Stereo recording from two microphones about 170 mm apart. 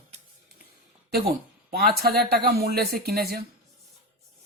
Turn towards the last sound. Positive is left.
turn(degrees=-65)  # may be behind; listen again after turning